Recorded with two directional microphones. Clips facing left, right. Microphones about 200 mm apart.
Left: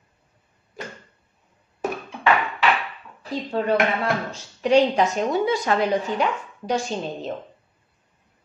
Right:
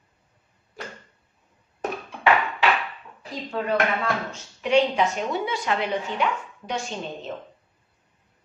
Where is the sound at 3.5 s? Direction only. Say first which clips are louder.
Left 3 dB; 30° left (ahead or behind).